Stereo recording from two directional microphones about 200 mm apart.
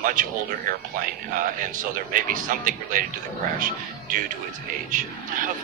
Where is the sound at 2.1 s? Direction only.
40° right (ahead or behind).